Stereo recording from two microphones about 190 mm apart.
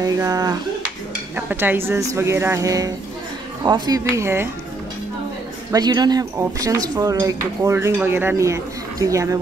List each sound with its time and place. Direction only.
0.0 s speech: 20° right (ahead or behind)
5.7 s speech: 20° right (ahead or behind)